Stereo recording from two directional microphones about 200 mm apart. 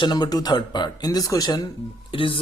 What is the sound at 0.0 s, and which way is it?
Speech, 20° left (ahead or behind).